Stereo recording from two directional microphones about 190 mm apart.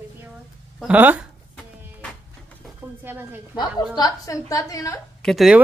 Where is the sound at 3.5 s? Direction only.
20° left (ahead or behind).